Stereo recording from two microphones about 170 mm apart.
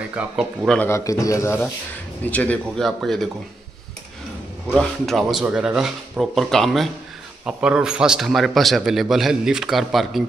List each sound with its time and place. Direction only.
0.1 s speech: 5° right (ahead or behind)
0.7 s a man's voice: 10° left (ahead or behind)
4.7 s a man's voice: centre (ahead or behind)